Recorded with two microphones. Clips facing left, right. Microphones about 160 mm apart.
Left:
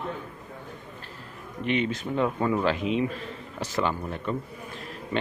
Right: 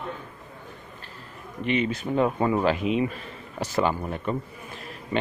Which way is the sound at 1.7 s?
5° right (ahead or behind).